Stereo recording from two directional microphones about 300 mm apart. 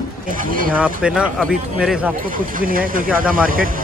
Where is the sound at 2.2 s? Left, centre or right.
Right.